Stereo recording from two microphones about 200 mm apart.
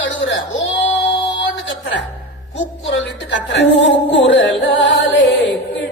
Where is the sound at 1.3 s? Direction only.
65° left (ahead or behind).